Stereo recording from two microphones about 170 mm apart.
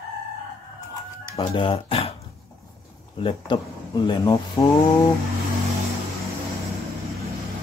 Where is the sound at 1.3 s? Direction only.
30° left (ahead or behind).